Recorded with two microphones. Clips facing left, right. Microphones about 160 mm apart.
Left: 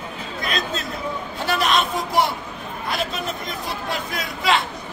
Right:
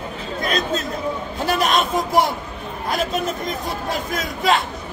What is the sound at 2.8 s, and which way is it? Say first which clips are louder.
A man's voice: right 4 dB; 45° right (ahead or behind).